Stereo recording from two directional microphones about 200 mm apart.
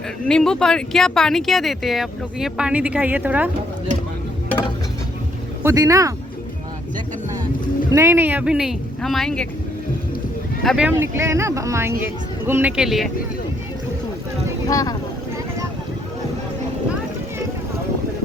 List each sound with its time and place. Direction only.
0.3 s speech: 5° left (ahead or behind)
5.6 s speech: 15° right (ahead or behind)
7.9 s speech: 15° right (ahead or behind); by 9.5 s 5° left (ahead or behind)
10.6 s speech: centre (ahead or behind)
10.8 s speech: 10° right (ahead or behind)
14.7 s speech: 15° left (ahead or behind)